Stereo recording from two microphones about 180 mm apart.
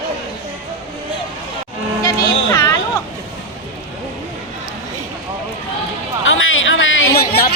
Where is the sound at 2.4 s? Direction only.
20° left (ahead or behind).